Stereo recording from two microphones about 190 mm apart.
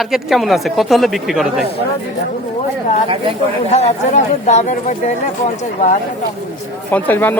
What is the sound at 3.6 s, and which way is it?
Speech, 35° left (ahead or behind).